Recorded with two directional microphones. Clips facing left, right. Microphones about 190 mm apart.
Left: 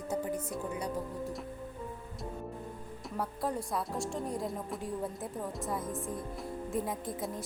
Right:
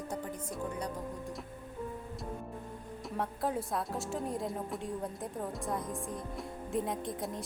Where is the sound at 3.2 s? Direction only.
Centre (ahead or behind).